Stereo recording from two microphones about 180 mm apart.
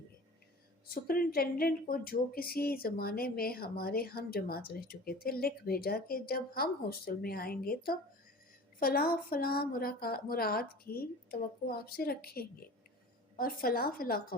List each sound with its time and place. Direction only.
0.9 s a woman's voice: 55° left (ahead or behind)